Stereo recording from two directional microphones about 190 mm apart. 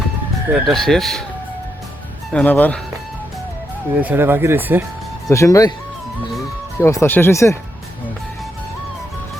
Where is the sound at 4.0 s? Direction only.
10° right (ahead or behind).